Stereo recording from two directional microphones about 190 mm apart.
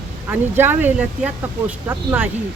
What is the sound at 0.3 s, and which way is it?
Speech, 10° right (ahead or behind).